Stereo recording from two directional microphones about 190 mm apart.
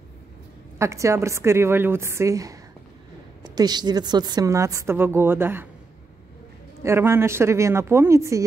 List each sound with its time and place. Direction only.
0.7 s a woman's voice: 15° right (ahead or behind)
6.8 s a woman's voice: 15° right (ahead or behind)